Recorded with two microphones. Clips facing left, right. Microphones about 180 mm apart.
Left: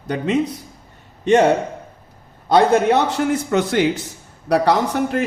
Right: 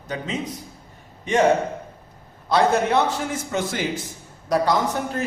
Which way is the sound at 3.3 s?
65° left (ahead or behind).